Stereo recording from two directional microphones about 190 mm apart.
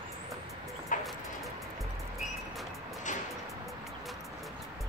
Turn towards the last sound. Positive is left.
turn(degrees=40)  # may be behind; listen again after turning